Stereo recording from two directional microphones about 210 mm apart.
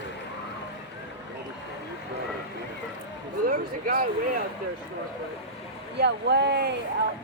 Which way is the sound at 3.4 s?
45° right (ahead or behind).